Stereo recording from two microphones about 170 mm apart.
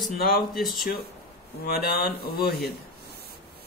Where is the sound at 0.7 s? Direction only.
60° left (ahead or behind).